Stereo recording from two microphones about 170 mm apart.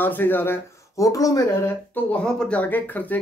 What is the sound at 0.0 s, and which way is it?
Speech, 10° left (ahead or behind).